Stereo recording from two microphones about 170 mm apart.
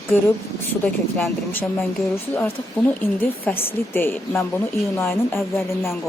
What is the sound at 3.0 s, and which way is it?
Speech, 10° left (ahead or behind).